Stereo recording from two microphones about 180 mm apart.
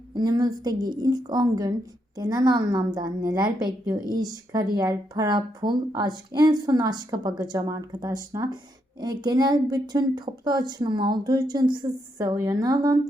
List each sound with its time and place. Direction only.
0.1 s speech: 25° right (ahead or behind)